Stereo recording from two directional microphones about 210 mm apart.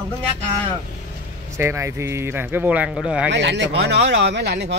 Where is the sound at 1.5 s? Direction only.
15° right (ahead or behind).